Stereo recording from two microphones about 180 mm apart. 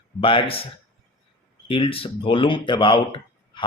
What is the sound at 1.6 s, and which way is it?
Speech, 30° left (ahead or behind).